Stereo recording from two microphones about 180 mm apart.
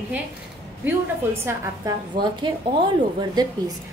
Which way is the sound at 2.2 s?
25° right (ahead or behind).